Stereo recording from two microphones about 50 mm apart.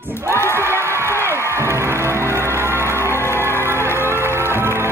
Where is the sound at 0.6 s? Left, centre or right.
Right.